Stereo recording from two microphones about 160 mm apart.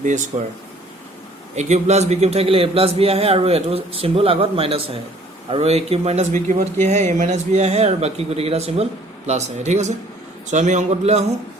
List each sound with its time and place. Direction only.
0.0 s a man's voice: 50° right (ahead or behind)
1.5 s a man's voice: 45° right (ahead or behind)